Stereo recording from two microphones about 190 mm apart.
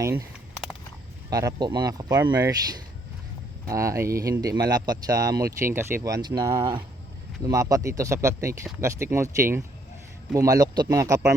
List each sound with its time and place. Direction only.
0.0 s speech: 15° right (ahead or behind)
1.3 s speech: 20° right (ahead or behind)